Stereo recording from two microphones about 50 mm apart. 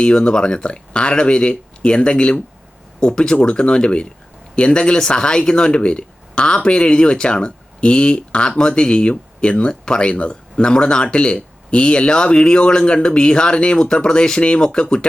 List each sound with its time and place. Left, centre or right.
0.0 s speech: centre